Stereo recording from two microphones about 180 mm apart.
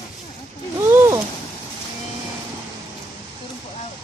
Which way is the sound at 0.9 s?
15° right (ahead or behind).